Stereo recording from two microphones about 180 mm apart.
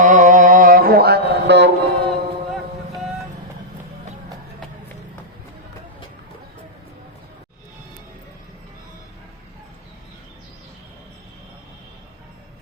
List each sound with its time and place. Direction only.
0.0 s music: 45° right (ahead or behind); by 2.1 s 65° right (ahead or behind)